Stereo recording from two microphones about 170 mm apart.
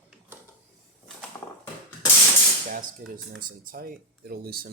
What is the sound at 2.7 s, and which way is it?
Speech, 55° right (ahead or behind).